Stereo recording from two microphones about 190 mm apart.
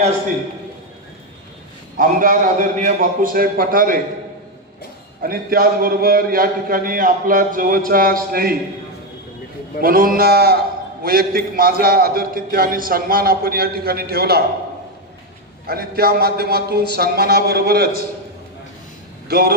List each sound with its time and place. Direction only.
2.0 s a man's voice: 45° right (ahead or behind)
5.2 s a man's voice: 50° right (ahead or behind)
9.8 s a man's voice: 50° right (ahead or behind)
15.6 s a man's voice: 55° right (ahead or behind)
19.2 s speech: 55° right (ahead or behind)